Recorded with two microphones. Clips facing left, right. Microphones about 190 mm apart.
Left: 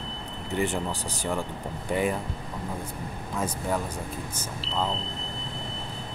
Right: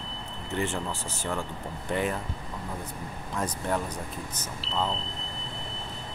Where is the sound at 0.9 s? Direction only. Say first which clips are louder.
Left 2 dB; 35° left (ahead or behind).